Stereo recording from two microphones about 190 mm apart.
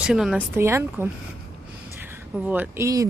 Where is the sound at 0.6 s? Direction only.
15° right (ahead or behind).